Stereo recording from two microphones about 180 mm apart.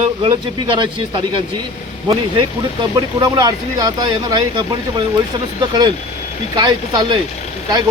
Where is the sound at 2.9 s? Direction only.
25° right (ahead or behind).